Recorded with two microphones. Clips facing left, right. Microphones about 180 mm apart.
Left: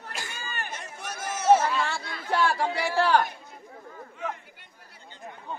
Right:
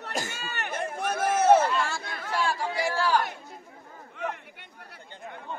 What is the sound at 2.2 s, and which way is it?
Speech, 65° left (ahead or behind).